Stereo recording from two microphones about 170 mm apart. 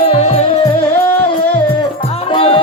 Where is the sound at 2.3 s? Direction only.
30° left (ahead or behind).